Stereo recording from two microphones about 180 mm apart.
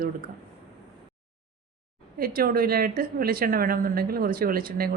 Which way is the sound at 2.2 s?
55° right (ahead or behind).